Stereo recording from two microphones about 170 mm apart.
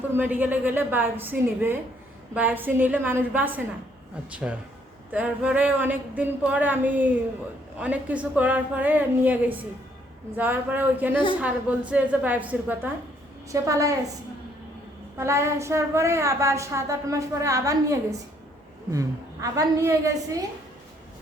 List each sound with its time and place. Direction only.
0.1 s a woman's voice: 10° right (ahead or behind)
15.2 s a woman's voice: 15° right (ahead or behind)